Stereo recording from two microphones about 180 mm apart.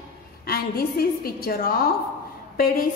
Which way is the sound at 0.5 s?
55° left (ahead or behind).